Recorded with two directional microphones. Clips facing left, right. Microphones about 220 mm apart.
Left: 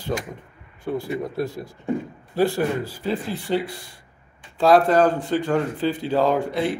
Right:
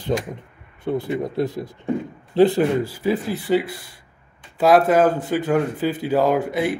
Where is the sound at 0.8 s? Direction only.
20° right (ahead or behind).